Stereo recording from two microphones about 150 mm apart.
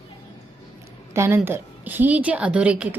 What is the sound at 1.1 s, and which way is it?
A woman's voice, 15° right (ahead or behind).